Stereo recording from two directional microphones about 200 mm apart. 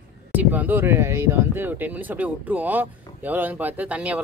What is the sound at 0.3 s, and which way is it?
Speech, 10° right (ahead or behind).